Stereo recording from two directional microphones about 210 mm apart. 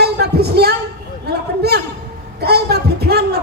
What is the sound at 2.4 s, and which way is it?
Speech, 50° right (ahead or behind).